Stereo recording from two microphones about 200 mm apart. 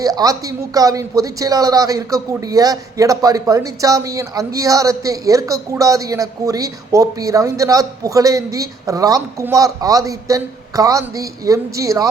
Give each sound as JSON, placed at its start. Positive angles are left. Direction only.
{"t": 0.0, "sound": "speech", "side_deg": -20}